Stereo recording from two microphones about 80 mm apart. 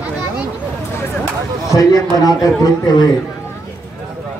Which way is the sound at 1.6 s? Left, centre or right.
Left.